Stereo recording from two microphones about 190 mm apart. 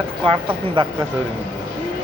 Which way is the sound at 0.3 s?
30° right (ahead or behind).